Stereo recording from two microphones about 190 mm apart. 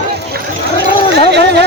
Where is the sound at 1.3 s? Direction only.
60° right (ahead or behind).